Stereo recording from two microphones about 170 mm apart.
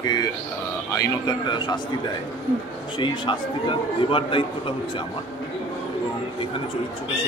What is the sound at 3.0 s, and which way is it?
A man's voice, 30° left (ahead or behind).